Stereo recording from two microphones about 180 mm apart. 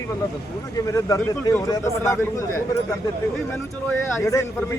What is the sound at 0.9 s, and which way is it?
A man's voice, 20° left (ahead or behind).